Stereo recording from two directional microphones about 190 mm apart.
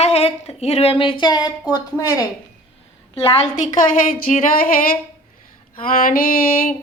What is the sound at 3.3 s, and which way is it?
Speech, 40° left (ahead or behind).